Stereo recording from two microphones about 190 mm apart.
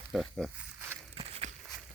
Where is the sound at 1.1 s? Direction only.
30° right (ahead or behind).